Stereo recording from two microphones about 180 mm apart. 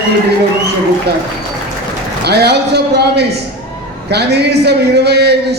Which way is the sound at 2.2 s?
65° right (ahead or behind).